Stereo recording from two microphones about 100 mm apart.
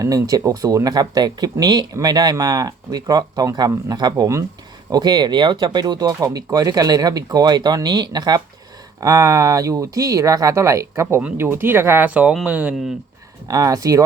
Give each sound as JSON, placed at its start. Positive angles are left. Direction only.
{"t": 0.0, "sound": "speech", "side_deg": -35}
{"t": 11.2, "sound": "speech", "side_deg": -15}
{"t": 13.5, "sound": "speech", "side_deg": -35}